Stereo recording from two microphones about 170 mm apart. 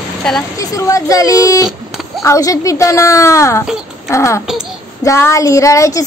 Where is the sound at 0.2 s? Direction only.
5° left (ahead or behind).